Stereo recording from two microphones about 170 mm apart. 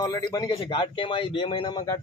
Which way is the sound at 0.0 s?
25° left (ahead or behind).